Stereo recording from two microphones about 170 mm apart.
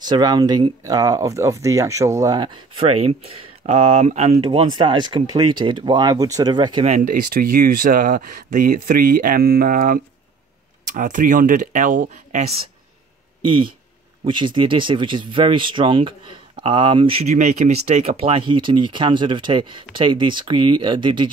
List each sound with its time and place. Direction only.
0.0 s speech: 25° right (ahead or behind)
7.1 s speech: 60° right (ahead or behind)
11.0 s speech: 50° right (ahead or behind)
13.4 s speech: 30° right (ahead or behind)